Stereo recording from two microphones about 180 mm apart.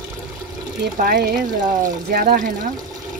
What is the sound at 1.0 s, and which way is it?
Speech, 55° right (ahead or behind).